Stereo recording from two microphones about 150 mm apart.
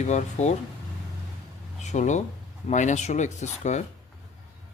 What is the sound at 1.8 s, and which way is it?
Speech, 50° left (ahead or behind).